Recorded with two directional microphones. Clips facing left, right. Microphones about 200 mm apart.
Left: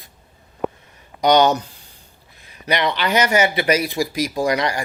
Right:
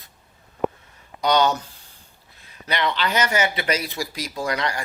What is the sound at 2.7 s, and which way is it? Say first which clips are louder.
Speech: left 4 dB; 15° left (ahead or behind).